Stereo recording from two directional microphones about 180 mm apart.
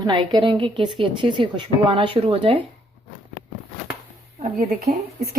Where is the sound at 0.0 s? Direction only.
25° right (ahead or behind).